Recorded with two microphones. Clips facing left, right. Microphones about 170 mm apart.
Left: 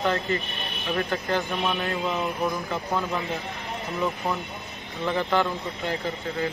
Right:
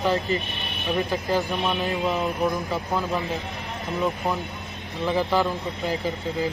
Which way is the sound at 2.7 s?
Centre (ahead or behind).